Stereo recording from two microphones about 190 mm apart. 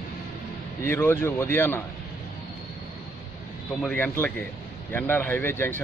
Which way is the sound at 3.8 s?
10° left (ahead or behind).